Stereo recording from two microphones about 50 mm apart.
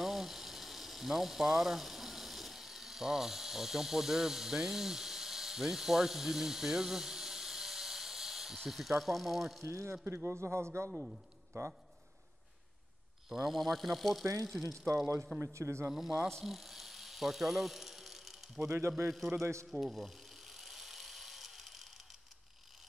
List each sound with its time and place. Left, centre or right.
0.0 s a sound: centre
9.6 s speech: right
10.0 s a man's voice: right
13.3 s speech: centre
15.4 s speech: right
15.9 s speech: centre
16.4 s snake: centre
18.7 s a man's voice: right
19.7 s a sound: centre